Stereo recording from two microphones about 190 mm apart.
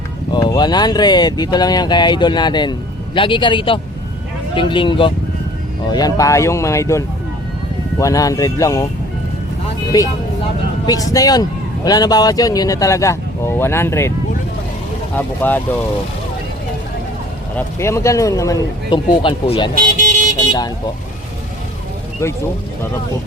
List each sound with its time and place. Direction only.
0.3 s speech: 20° left (ahead or behind)
9.9 s speech: 20° left (ahead or behind)
15.1 s speech: 10° left (ahead or behind)
17.7 s speech: 15° left (ahead or behind)
20.0 s vehicle: 40° right (ahead or behind)
20.5 s speech: 20° left (ahead or behind)
22.2 s speech: 15° left (ahead or behind)